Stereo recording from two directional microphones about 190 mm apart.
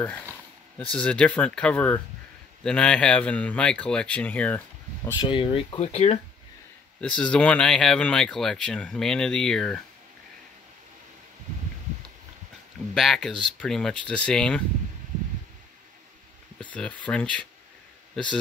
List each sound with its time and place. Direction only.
0.9 s speech: 5° left (ahead or behind)
5.2 s speech: 25° left (ahead or behind)
7.0 s speech: 5° left (ahead or behind)
12.9 s speech: centre (ahead or behind)
16.5 s speech: 5° left (ahead or behind)